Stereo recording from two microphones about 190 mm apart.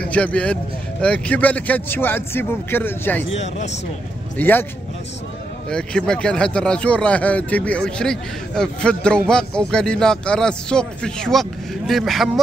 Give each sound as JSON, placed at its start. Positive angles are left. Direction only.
{"t": 0.0, "sound": "speech", "side_deg": 5}
{"t": 3.3, "sound": "speech", "side_deg": 35}
{"t": 4.4, "sound": "speech", "side_deg": 10}
{"t": 5.7, "sound": "speech", "side_deg": 5}